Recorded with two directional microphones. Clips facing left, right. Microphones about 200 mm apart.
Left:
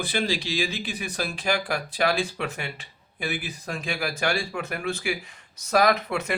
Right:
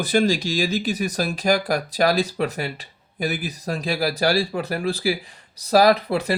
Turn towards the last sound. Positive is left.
turn(degrees=-35)  # may be behind; listen again after turning